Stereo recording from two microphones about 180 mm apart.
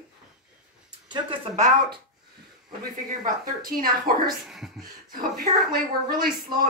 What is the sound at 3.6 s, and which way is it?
Speech, 55° right (ahead or behind).